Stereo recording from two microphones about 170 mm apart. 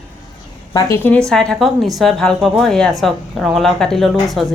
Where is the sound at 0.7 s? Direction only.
15° left (ahead or behind).